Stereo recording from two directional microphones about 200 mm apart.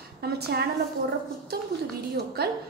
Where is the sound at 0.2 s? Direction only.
50° right (ahead or behind).